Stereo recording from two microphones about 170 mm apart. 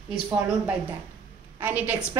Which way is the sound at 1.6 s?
10° right (ahead or behind).